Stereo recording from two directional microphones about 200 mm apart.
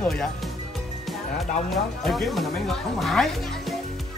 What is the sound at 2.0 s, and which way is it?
Speech, centre (ahead or behind).